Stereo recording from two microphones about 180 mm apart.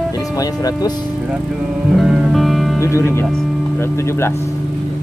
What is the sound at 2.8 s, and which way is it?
Speech, 15° left (ahead or behind).